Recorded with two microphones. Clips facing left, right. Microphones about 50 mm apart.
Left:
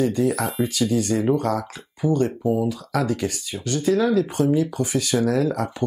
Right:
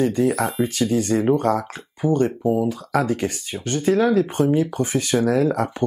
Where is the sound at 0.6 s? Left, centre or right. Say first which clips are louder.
Right 1 dB; right.